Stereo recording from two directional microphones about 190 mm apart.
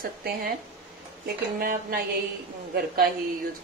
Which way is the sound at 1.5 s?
50° right (ahead or behind).